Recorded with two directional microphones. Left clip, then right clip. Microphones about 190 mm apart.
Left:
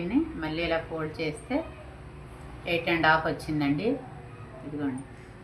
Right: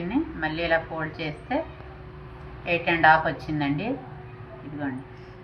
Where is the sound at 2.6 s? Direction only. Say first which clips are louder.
Right 5 dB; 20° left (ahead or behind).